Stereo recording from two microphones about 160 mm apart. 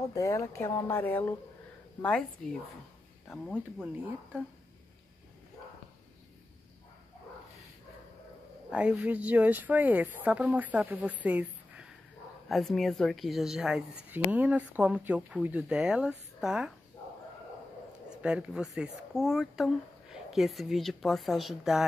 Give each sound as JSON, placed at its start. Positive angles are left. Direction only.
{"t": 0.1, "sound": "a woman's voice", "side_deg": 20}
{"t": 3.3, "sound": "a woman's voice", "side_deg": 0}
{"t": 8.6, "sound": "a woman's voice", "side_deg": -5}
{"t": 18.1, "sound": "a woman's voice", "side_deg": -5}